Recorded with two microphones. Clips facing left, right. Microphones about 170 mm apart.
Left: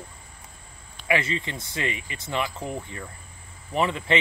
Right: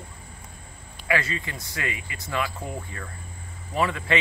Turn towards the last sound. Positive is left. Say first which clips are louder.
# left 1 dB
turn(degrees=20)  # may be behind; listen again after turning